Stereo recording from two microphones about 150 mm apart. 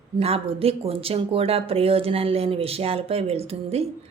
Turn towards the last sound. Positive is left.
turn(degrees=-40)  # may be behind; listen again after turning